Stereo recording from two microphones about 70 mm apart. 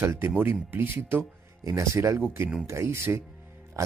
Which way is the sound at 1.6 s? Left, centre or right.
Right.